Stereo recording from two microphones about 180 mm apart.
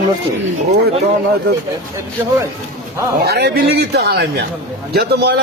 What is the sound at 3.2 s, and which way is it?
A man's voice, 65° right (ahead or behind).